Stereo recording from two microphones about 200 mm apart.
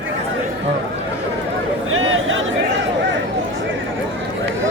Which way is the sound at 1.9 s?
85° right.